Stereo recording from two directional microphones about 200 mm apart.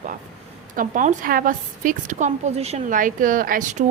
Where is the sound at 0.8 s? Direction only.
40° right (ahead or behind).